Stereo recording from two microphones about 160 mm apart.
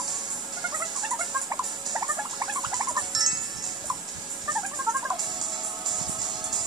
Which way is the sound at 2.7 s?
25° right (ahead or behind).